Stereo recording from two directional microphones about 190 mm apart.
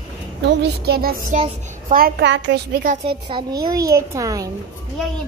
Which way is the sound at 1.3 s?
30° right (ahead or behind).